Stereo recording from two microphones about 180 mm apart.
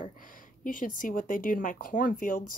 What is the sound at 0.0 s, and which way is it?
A woman's voice, 50° left (ahead or behind).